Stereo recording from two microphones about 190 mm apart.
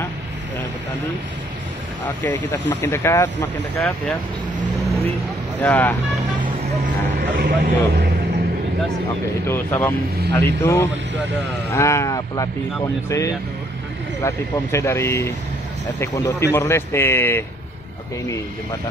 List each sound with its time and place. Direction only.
2.7 s speech: 15° left (ahead or behind)
5.6 s speech: 10° left (ahead or behind)
7.3 s speech: 55° right (ahead or behind)
9.5 s speech: 15° left (ahead or behind)